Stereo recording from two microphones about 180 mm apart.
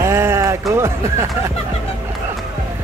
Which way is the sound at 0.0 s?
15° right (ahead or behind).